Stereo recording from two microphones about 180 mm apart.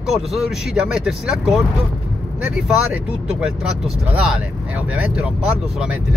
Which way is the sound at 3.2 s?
5° right (ahead or behind).